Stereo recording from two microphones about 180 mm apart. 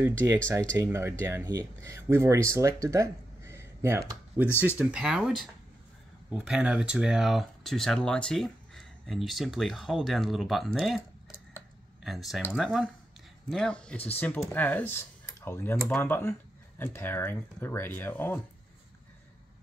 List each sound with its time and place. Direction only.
0.0 s speech: 15° right (ahead or behind)
12.0 s speech: centre (ahead or behind)